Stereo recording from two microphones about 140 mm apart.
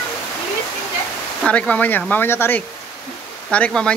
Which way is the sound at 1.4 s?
10° left (ahead or behind).